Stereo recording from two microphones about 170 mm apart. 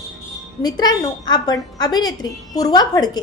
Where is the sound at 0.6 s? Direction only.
25° left (ahead or behind).